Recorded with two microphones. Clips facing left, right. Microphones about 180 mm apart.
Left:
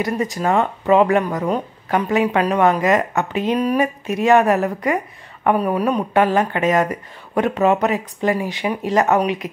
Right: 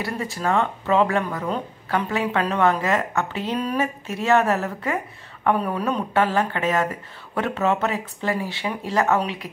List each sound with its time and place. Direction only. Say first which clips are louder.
0.0 s speech: left 6 dB; 20° left (ahead or behind)